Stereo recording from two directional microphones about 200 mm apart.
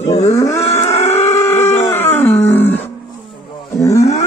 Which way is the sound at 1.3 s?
10° left (ahead or behind).